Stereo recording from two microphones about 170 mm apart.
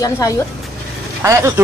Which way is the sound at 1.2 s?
15° right (ahead or behind).